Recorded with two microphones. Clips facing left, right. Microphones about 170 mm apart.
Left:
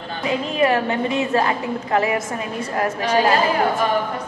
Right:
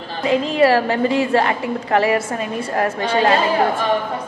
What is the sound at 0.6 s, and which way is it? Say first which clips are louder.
A woman's voice: right 3 dB; 35° right (ahead or behind).